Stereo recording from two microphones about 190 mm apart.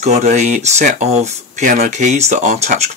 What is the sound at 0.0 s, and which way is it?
Speech, 40° right (ahead or behind).